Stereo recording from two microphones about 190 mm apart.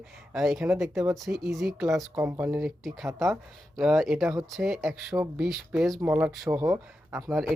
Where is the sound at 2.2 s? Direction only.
10° right (ahead or behind).